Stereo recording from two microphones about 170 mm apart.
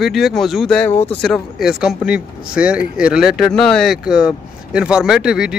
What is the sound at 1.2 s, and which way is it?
Speech, centre (ahead or behind).